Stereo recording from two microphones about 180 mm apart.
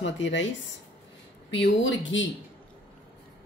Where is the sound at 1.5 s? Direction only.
85° left.